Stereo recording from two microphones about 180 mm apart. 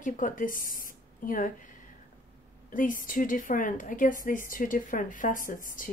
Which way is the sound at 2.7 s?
50° left (ahead or behind).